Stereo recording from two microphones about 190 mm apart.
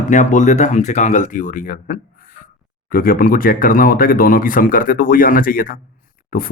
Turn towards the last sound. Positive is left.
turn(degrees=45)  # may be behind; listen again after turning